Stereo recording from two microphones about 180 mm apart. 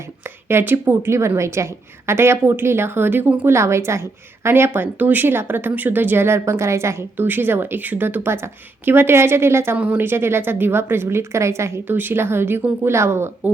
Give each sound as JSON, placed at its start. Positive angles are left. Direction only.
{"t": 0.4, "sound": "a woman's voice", "side_deg": -10}